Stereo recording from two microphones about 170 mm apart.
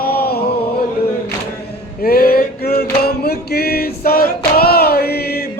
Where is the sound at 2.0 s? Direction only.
60° left (ahead or behind).